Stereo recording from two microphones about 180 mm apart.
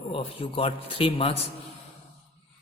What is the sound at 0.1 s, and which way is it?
Speech, 30° left (ahead or behind).